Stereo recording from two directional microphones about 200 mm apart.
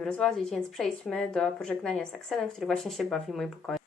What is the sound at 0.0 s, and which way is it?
Speech, 5° left (ahead or behind).